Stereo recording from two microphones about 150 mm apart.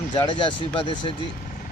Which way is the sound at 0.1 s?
35° left (ahead or behind).